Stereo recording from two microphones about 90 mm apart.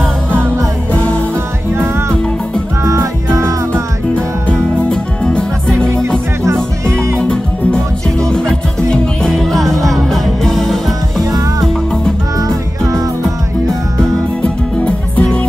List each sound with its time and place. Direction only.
2.8 s music: 30° right (ahead or behind)
4.1 s music: 15° left (ahead or behind)
6.4 s music: 30° right (ahead or behind)
7.2 s music: 10° left (ahead or behind)
12.4 s music: 40° right (ahead or behind)
14.4 s music: 10° left (ahead or behind)